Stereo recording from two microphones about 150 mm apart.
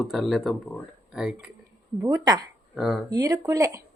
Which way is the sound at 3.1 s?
25° right (ahead or behind).